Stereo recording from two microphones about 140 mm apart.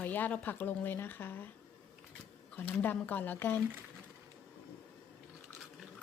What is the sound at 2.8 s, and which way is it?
Speech, 15° left (ahead or behind).